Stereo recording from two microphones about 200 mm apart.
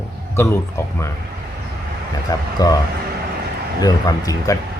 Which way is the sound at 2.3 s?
20° left (ahead or behind).